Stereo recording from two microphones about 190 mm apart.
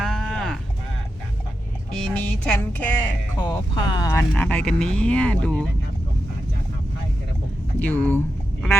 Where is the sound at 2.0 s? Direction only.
5° left (ahead or behind).